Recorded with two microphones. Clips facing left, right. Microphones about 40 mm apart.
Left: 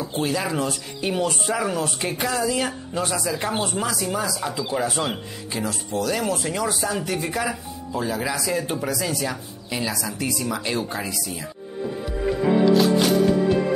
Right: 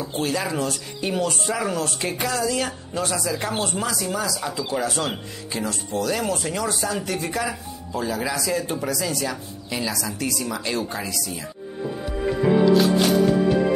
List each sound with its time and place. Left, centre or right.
0.0 s speech: centre
5.1 s speech: centre
12.4 s music: centre